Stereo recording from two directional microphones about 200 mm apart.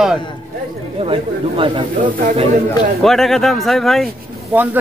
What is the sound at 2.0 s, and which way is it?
Speech, 40° right (ahead or behind).